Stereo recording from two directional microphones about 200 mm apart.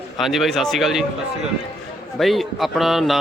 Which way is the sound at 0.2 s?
Centre (ahead or behind).